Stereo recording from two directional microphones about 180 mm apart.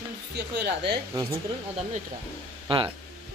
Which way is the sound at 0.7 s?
65° right (ahead or behind).